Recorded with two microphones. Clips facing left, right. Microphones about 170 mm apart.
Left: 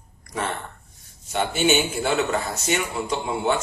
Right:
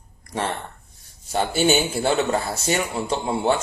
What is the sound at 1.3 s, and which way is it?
A man's voice, 35° right (ahead or behind).